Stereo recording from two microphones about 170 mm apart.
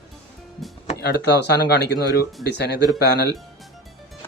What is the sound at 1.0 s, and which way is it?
Speech, 80° left.